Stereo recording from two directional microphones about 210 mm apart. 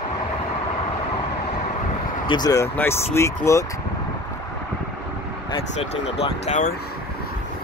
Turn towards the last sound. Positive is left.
turn(degrees=35)  # may be behind; listen again after turning